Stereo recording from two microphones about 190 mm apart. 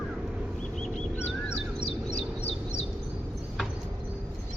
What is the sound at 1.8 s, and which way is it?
Bird, 35° left (ahead or behind).